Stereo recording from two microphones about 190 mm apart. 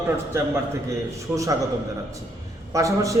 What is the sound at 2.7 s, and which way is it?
Speech, 15° right (ahead or behind).